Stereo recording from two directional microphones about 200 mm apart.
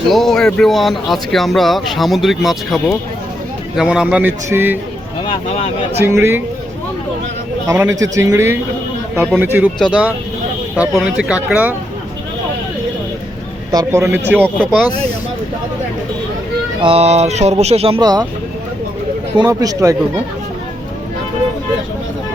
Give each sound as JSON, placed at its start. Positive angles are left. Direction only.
{"t": 0.1, "sound": "a man's voice", "side_deg": 0}
{"t": 5.2, "sound": "speech", "side_deg": 25}
{"t": 6.0, "sound": "a man's voice", "side_deg": -15}
{"t": 7.7, "sound": "a man's voice", "side_deg": -15}
{"t": 13.7, "sound": "a man's voice", "side_deg": -15}
{"t": 14.4, "sound": "speech", "side_deg": 5}
{"t": 16.8, "sound": "speech", "side_deg": -30}
{"t": 19.4, "sound": "a man's voice", "side_deg": -15}